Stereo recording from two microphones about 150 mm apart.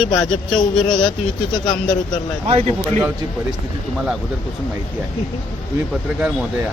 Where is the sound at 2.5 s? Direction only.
40° right (ahead or behind).